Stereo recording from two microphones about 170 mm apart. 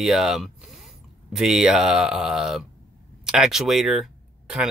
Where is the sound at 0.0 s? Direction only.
Centre (ahead or behind).